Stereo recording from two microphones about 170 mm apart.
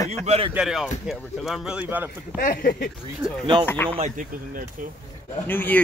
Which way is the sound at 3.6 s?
10° left (ahead or behind).